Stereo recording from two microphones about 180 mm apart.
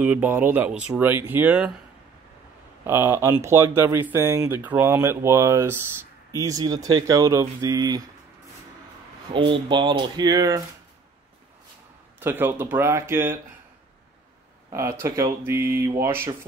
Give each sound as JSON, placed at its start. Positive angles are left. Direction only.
{"t": 0.0, "sound": "speech", "side_deg": -10}
{"t": 2.8, "sound": "speech", "side_deg": -15}
{"t": 9.3, "sound": "speech", "side_deg": -25}
{"t": 12.2, "sound": "speech", "side_deg": -10}
{"t": 14.7, "sound": "speech", "side_deg": -15}